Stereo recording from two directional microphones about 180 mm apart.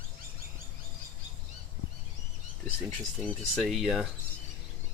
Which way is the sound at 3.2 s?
Centre (ahead or behind).